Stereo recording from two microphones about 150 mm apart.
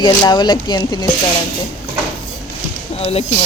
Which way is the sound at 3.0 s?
40° left (ahead or behind).